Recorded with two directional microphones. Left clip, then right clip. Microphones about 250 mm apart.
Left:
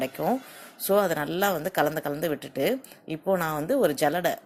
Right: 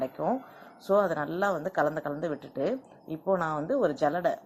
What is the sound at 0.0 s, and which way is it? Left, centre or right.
Speech, left.